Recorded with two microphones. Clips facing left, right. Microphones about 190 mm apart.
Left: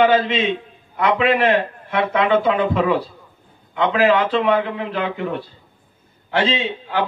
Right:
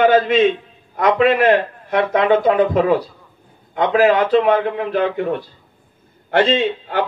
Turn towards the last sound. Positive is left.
turn(degrees=-50)  # may be behind; listen again after turning